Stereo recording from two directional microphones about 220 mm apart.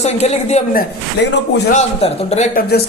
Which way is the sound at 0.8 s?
50° left (ahead or behind).